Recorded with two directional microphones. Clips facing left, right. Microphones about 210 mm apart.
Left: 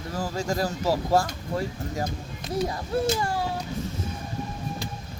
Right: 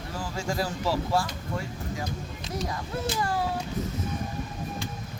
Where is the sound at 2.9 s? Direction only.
30° left (ahead or behind).